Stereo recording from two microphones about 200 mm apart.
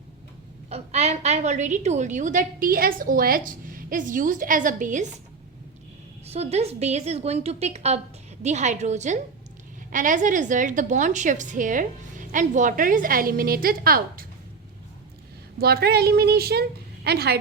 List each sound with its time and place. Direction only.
0.7 s a woman's voice: 30° right (ahead or behind)
6.2 s a woman's voice: 30° right (ahead or behind); by 14.3 s 45° right (ahead or behind)
15.5 s a woman's voice: 50° right (ahead or behind)